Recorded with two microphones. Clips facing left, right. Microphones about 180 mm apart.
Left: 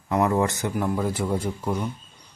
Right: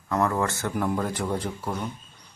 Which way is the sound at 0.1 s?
15° left (ahead or behind).